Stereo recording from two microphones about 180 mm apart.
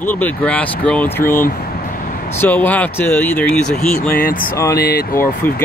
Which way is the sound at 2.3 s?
10° left (ahead or behind).